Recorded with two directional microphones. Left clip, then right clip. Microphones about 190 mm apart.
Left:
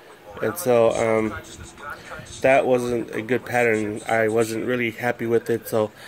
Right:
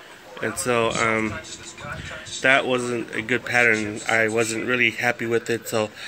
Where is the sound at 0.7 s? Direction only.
25° left (ahead or behind).